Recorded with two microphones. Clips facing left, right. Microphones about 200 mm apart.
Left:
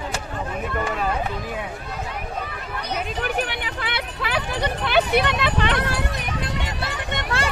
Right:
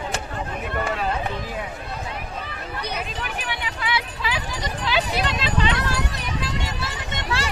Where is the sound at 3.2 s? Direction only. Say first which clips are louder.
Left 5 dB; 55° left (ahead or behind).